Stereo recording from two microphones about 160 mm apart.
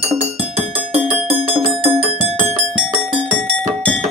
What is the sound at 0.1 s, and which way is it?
Music, 40° right (ahead or behind).